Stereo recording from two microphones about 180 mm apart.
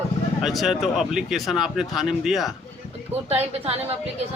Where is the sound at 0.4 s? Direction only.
Centre (ahead or behind).